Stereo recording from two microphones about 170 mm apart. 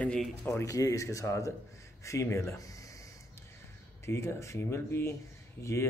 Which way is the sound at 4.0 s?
15° left (ahead or behind).